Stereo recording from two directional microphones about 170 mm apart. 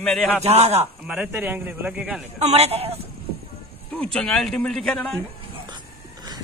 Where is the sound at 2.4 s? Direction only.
40° right (ahead or behind).